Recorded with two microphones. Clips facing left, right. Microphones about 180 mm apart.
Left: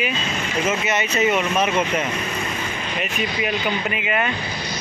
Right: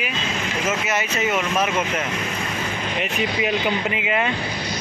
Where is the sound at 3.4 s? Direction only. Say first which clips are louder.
Right 1 dB; 20° right (ahead or behind).